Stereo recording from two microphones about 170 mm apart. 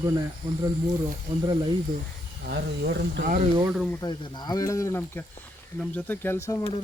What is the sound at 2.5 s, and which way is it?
Speech, 75° right (ahead or behind).